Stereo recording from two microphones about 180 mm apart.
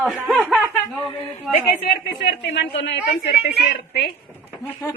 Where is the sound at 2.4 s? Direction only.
75° left (ahead or behind).